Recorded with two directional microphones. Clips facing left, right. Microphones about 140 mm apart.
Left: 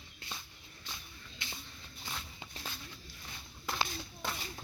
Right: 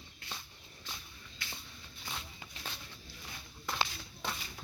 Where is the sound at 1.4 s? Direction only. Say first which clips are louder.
Even; 25° left (ahead or behind).